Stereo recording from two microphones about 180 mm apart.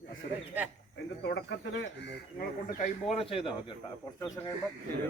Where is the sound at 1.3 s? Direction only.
75° left (ahead or behind).